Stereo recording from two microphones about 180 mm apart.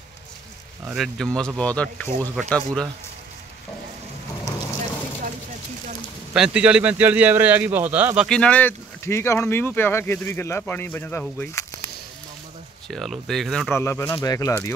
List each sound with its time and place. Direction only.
0.8 s speech: centre (ahead or behind)
6.3 s a man's voice: 5° right (ahead or behind)
8.3 s speech: 5° left (ahead or behind)
12.8 s speech: centre (ahead or behind)
13.7 s speech: 15° left (ahead or behind)